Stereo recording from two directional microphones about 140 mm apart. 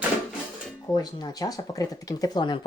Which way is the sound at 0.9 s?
30° left (ahead or behind).